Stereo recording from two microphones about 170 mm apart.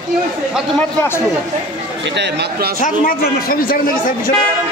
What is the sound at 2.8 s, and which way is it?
A man's voice, 55° left (ahead or behind).